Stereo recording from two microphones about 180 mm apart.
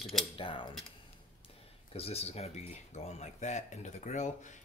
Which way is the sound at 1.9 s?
35° left (ahead or behind).